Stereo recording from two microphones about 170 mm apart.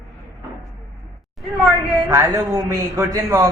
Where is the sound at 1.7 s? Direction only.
15° right (ahead or behind).